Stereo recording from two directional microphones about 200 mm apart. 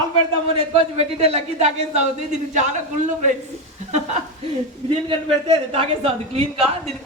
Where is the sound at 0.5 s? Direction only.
30° right (ahead or behind).